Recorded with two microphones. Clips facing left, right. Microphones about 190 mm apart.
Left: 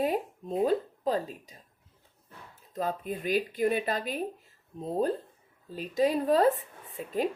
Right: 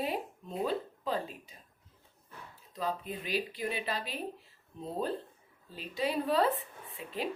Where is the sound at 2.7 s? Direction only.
50° left (ahead or behind).